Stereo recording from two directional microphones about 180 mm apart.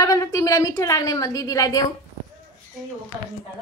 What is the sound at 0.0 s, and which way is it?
A woman's voice, 20° left (ahead or behind).